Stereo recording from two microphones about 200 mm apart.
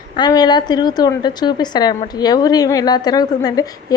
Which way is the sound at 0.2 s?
20° left (ahead or behind).